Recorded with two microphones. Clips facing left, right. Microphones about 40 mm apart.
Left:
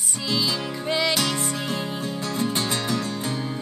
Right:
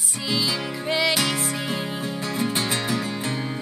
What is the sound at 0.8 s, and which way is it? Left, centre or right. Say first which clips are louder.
Music: right 1 dB; centre.